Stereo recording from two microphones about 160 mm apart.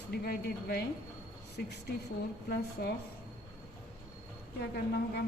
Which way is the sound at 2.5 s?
90° left.